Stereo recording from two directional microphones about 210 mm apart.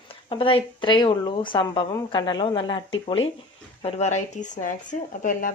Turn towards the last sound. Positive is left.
turn(degrees=40)  # may be behind; listen again after turning